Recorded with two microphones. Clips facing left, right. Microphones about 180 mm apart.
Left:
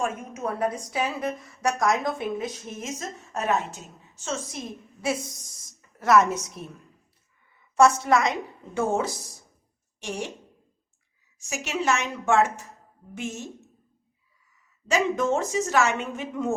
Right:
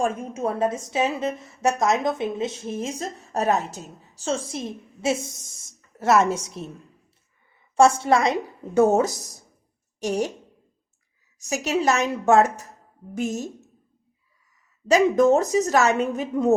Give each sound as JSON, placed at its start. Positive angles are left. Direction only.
{"t": 0.0, "sound": "a woman's voice", "side_deg": -30}
{"t": 7.8, "sound": "a woman's voice", "side_deg": -30}
{"t": 11.4, "sound": "a woman's voice", "side_deg": -40}
{"t": 14.8, "sound": "a woman's voice", "side_deg": -40}